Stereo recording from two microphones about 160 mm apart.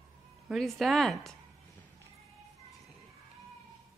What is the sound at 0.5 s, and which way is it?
Speech, centre (ahead or behind).